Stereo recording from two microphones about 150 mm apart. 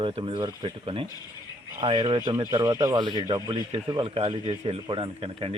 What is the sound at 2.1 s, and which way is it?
Speech, 25° right (ahead or behind).